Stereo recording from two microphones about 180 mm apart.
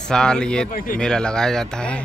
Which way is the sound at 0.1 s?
5° left (ahead or behind).